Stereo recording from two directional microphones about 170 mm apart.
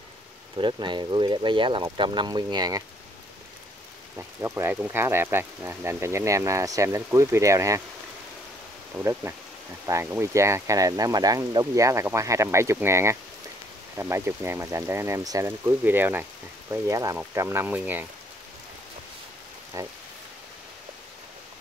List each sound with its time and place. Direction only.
0.6 s speech: 25° right (ahead or behind)
4.4 s speech: 15° right (ahead or behind)
8.9 s speech: 15° right (ahead or behind)
19.7 s speech: 20° right (ahead or behind)